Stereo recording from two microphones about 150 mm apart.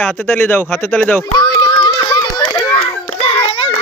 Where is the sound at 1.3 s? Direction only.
30° left (ahead or behind).